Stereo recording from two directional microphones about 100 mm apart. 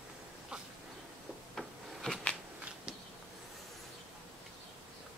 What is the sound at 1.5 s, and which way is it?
Rub, 5° left (ahead or behind).